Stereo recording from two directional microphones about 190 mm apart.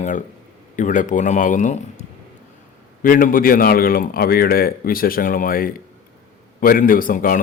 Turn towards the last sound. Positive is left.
turn(degrees=45)  # may be behind; listen again after turning